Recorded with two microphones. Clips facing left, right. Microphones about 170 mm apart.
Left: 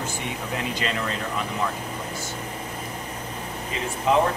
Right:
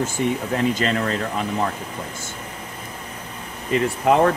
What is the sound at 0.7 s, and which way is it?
Speech, 50° right (ahead or behind).